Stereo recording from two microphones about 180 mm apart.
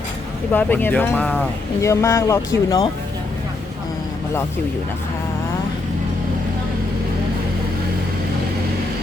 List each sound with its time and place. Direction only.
0.5 s speech: 10° left (ahead or behind)